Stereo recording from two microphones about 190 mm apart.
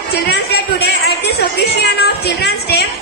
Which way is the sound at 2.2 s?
60° left (ahead or behind).